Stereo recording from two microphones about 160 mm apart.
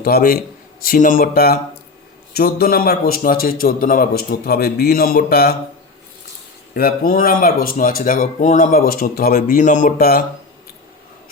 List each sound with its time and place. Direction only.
0.0 s a man's voice: 70° left (ahead or behind)
6.7 s speech: 65° left (ahead or behind)